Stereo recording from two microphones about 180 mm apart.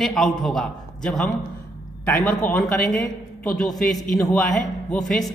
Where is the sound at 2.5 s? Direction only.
10° left (ahead or behind).